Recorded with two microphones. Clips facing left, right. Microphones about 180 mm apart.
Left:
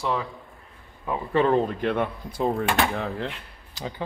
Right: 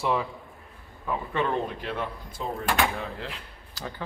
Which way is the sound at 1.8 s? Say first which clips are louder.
Left 7 dB; 60° left (ahead or behind).